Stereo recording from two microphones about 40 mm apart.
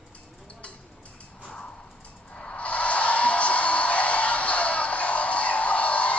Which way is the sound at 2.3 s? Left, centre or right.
Left.